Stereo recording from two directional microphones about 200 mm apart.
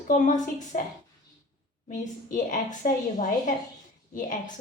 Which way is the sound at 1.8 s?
40° left (ahead or behind).